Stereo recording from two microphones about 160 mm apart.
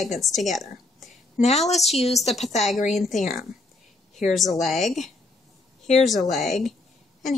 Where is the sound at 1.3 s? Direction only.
45° left (ahead or behind).